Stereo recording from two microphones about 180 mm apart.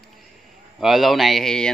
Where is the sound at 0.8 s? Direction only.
Centre (ahead or behind).